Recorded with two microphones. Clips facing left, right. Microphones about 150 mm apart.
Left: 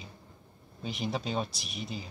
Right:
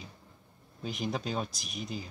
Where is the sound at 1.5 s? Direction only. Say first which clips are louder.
Even; 45° right (ahead or behind).